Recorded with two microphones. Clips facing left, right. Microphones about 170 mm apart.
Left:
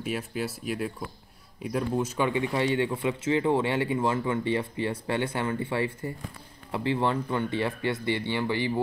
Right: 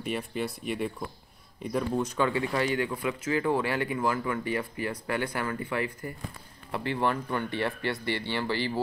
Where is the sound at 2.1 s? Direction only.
20° left (ahead or behind).